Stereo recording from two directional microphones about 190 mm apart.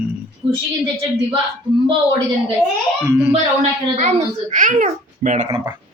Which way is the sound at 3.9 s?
40° right (ahead or behind).